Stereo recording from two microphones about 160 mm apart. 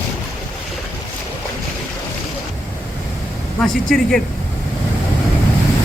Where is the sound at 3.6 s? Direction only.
Centre (ahead or behind).